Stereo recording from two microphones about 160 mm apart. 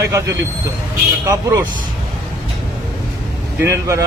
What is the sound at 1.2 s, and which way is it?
Speech, 20° right (ahead or behind).